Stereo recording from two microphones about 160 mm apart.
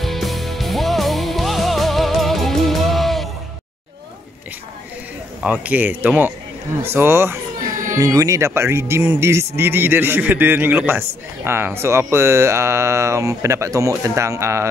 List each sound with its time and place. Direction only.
0.0 s music: centre (ahead or behind)
5.4 s a man's voice: 10° right (ahead or behind)